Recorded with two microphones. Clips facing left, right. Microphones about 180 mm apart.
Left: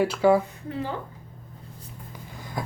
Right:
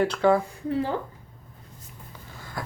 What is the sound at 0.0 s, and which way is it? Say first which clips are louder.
Speech: left 1 dB; 10° left (ahead or behind).